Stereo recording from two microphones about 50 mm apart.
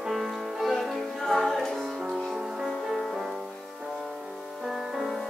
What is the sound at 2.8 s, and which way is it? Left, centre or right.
Music, centre.